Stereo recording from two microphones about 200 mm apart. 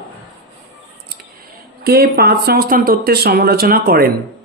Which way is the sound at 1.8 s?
50° right (ahead or behind).